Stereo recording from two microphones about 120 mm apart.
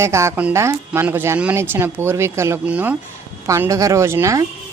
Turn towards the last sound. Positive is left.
turn(degrees=-25)  # may be behind; listen again after turning